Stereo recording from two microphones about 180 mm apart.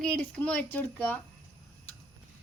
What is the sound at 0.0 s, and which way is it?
Speech, 5° left (ahead or behind).